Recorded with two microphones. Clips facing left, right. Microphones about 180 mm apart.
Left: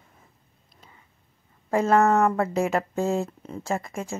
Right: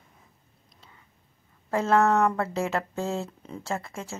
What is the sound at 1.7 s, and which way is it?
Speech, 10° left (ahead or behind).